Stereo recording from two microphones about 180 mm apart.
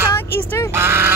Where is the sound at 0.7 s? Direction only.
10° right (ahead or behind).